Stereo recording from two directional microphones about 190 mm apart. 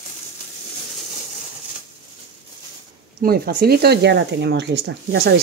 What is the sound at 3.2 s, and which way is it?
Speech, 55° right (ahead or behind).